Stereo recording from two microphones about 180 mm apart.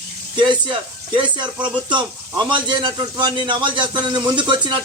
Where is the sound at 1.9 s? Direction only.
25° right (ahead or behind).